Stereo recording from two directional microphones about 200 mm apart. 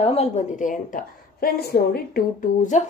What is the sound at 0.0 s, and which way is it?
A woman's voice, 30° left (ahead or behind).